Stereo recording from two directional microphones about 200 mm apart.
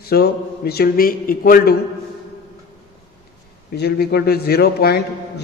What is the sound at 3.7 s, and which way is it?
A man's voice, 55° left (ahead or behind).